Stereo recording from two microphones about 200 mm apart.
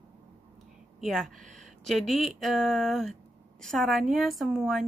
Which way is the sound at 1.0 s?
Centre (ahead or behind).